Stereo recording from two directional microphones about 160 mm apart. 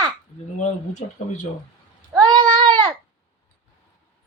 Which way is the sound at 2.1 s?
25° right (ahead or behind).